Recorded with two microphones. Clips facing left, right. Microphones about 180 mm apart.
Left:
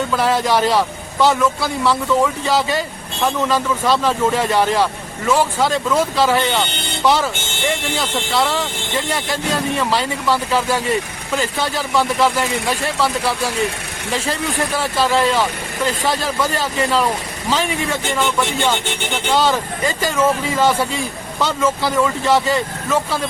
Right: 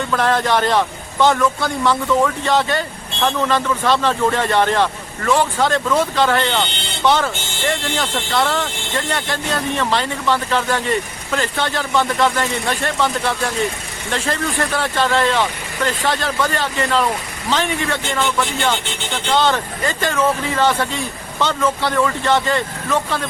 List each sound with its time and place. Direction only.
0.1 s a man's voice: 5° left (ahead or behind)
14.8 s a man's voice: 5° left (ahead or behind)